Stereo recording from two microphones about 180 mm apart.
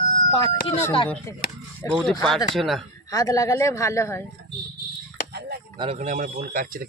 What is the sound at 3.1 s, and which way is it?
Speech, 20° left (ahead or behind).